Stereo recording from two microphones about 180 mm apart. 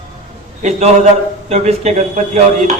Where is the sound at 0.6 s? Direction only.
35° right (ahead or behind).